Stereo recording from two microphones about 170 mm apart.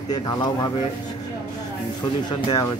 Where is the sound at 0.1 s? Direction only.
25° left (ahead or behind).